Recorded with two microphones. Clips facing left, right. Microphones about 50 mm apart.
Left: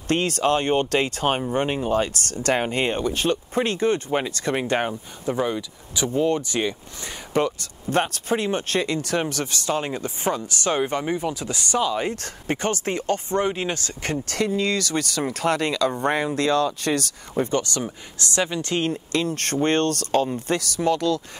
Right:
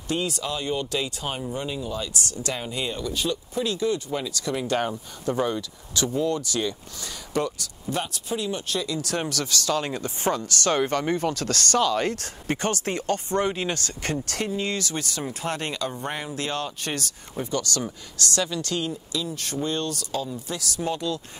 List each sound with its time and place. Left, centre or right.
0.1 s speech: left
4.6 s speech: left
6.1 s speech: left
7.9 s speech: left
12.2 s speech: left
14.3 s speech: left
17.5 s speech: left
18.8 s speech: left